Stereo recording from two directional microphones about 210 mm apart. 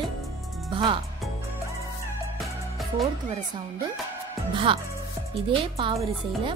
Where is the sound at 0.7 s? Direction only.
20° right (ahead or behind).